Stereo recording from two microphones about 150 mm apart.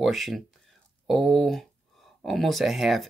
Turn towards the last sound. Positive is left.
turn(degrees=0)  # may be behind; listen again after turning